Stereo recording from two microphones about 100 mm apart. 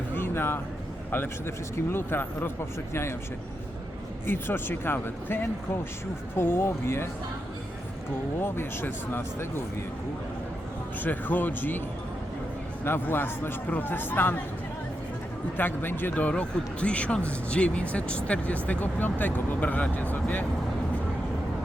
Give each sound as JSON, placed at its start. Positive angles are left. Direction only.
{"t": 0.1, "sound": "a sound", "side_deg": 25}
{"t": 1.1, "sound": "speech", "side_deg": 20}
{"t": 4.3, "sound": "speech", "side_deg": 25}
{"t": 8.4, "sound": "speech", "side_deg": 20}
{"t": 11.0, "sound": "speech", "side_deg": 20}
{"t": 12.8, "sound": "speech", "side_deg": 25}
{"t": 15.5, "sound": "speech", "side_deg": 20}